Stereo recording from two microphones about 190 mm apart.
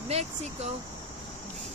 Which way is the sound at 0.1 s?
35° right (ahead or behind).